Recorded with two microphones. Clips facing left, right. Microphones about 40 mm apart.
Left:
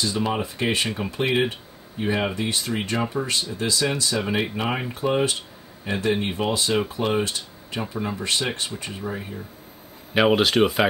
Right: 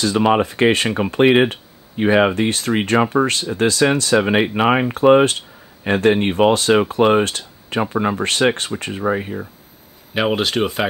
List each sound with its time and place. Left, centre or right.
0.0 s speech: right
0.8 s speech: right
10.1 s speech: centre